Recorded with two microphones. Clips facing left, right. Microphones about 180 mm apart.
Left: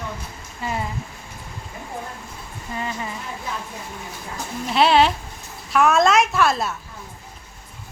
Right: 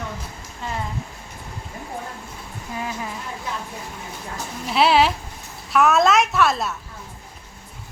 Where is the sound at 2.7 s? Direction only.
5° right (ahead or behind).